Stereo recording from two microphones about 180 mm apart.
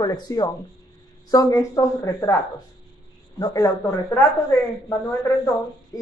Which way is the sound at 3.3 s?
20° left (ahead or behind).